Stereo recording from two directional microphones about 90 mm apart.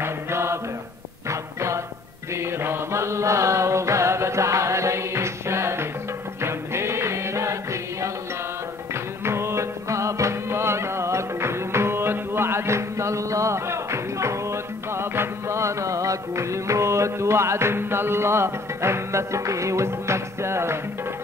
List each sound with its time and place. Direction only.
0.0 s mantra: 30° right (ahead or behind)
1.3 s music: 35° right (ahead or behind)